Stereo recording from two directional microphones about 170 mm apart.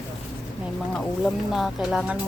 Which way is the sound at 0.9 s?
Centre (ahead or behind).